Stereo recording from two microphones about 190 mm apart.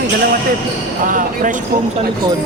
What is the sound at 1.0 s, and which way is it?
Speech, 45° right (ahead or behind).